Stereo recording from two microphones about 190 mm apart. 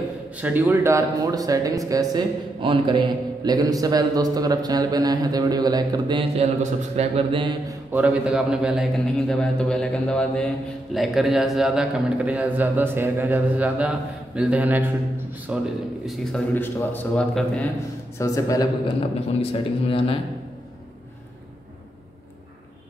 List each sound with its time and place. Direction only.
0.4 s speech: 10° right (ahead or behind); by 7.5 s 30° right (ahead or behind)
7.9 s a man's voice: 5° right (ahead or behind)
18.1 s a man's voice: 20° left (ahead or behind)
19.9 s speech: 30° left (ahead or behind)